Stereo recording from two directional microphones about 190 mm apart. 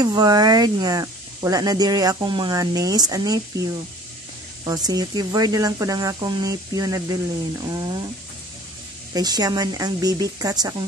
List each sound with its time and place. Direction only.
0.0 s speech: 20° right (ahead or behind)
4.6 s speech: 20° right (ahead or behind)
9.1 s speech: 20° right (ahead or behind)